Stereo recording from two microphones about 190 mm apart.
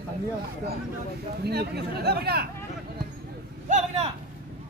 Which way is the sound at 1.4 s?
60° right (ahead or behind).